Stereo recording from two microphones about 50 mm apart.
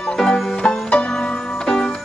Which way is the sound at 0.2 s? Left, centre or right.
Centre.